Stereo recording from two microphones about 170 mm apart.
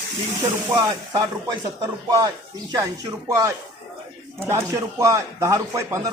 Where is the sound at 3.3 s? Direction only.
15° right (ahead or behind).